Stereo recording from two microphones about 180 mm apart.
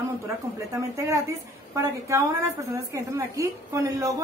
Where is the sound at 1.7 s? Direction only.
15° right (ahead or behind).